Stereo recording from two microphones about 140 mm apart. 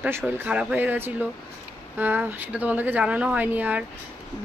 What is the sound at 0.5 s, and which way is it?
Speech, 10° right (ahead or behind).